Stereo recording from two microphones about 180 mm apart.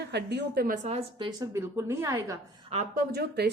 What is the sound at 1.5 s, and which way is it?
Speech, 15° right (ahead or behind).